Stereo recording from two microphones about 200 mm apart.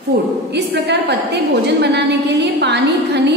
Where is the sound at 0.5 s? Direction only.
55° right (ahead or behind).